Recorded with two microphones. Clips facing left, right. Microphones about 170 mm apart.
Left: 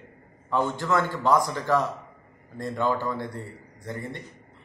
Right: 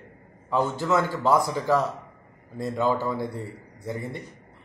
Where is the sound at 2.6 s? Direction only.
5° right (ahead or behind).